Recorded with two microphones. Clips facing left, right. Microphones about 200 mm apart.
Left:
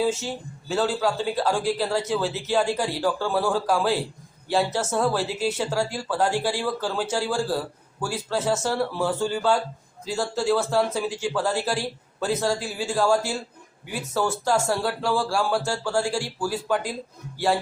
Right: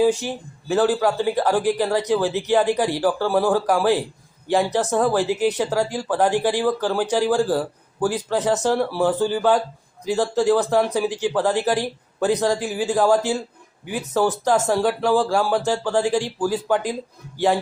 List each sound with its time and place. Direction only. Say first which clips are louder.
0.0 s speech: right 6 dB; 15° right (ahead or behind)